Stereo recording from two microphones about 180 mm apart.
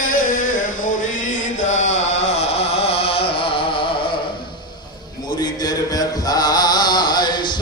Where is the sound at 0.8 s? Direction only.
50° left (ahead or behind).